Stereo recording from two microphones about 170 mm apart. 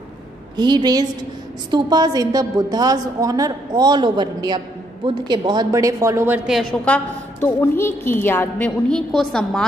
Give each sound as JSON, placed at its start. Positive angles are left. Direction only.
{"t": 0.6, "sound": "a woman's voice", "side_deg": -25}
{"t": 6.7, "sound": "a woman's voice", "side_deg": 5}